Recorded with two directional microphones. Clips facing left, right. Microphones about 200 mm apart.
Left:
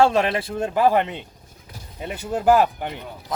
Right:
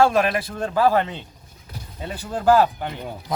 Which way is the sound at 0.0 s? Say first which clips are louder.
Even; 25° left (ahead or behind).